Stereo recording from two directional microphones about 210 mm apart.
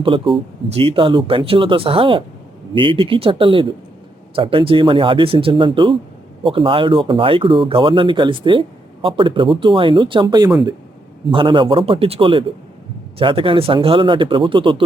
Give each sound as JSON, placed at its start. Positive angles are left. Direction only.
{"t": 0.0, "sound": "speech", "side_deg": -25}